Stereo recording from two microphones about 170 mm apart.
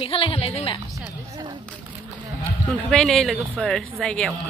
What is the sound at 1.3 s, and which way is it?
Speech, 25° right (ahead or behind).